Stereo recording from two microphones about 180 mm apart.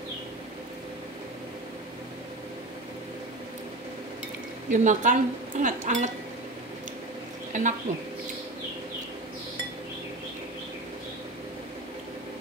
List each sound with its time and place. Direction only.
4.6 s speech: 45° right (ahead or behind)
7.5 s speech: 45° right (ahead or behind)